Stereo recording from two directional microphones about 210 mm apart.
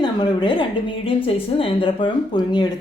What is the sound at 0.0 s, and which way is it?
A woman's voice, 20° left (ahead or behind).